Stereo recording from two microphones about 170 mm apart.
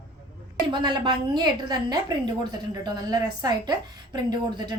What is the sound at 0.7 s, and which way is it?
A woman's voice, 25° right (ahead or behind).